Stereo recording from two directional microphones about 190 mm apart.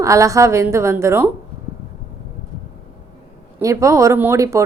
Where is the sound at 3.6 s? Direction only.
15° right (ahead or behind).